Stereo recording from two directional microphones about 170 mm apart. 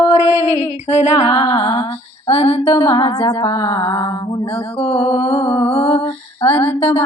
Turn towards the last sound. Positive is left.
turn(degrees=35)  # may be behind; listen again after turning